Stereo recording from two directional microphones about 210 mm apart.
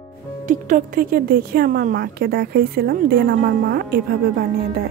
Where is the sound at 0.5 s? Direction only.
40° right (ahead or behind).